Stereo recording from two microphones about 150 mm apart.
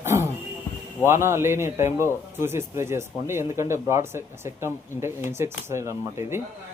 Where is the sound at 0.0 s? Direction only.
15° right (ahead or behind).